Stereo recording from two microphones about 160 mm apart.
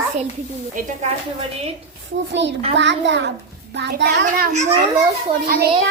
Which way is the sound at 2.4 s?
90° right.